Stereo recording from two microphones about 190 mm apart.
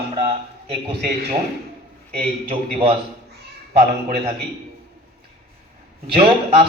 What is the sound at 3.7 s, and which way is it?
Speech, 60° right (ahead or behind).